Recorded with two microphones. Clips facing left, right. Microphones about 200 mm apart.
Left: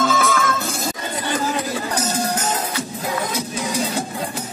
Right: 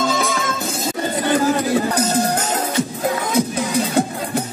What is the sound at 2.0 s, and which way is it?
Music, 55° right (ahead or behind).